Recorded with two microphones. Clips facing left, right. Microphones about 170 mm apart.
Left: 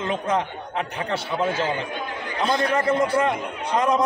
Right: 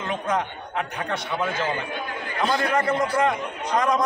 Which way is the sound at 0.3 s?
30° left (ahead or behind).